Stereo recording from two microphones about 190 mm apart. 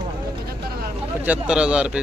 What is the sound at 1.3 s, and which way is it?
Speech, 5° right (ahead or behind).